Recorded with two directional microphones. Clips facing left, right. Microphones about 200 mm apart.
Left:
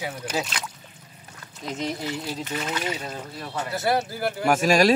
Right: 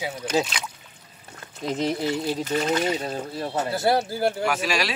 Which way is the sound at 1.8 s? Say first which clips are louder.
Right 4 dB; 35° right (ahead or behind).